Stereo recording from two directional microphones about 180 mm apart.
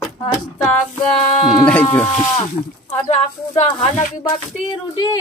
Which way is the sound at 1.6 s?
10° left (ahead or behind).